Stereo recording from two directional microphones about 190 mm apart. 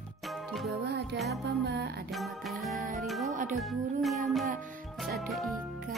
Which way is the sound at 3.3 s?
40° right (ahead or behind).